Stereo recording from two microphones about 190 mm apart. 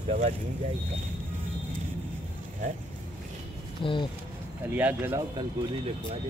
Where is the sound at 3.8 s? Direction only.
25° left (ahead or behind).